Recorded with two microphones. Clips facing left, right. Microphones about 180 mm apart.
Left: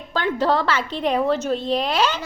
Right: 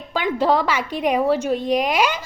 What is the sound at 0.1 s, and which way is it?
A woman's voice, 10° right (ahead or behind).